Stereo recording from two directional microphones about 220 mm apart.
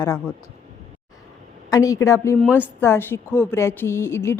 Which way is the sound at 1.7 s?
15° left (ahead or behind).